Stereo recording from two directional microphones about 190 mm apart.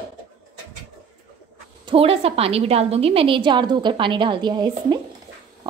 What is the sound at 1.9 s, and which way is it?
A woman's voice, 30° right (ahead or behind).